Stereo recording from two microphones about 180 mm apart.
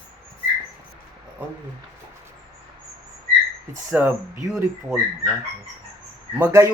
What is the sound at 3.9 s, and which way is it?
Speech, 10° right (ahead or behind).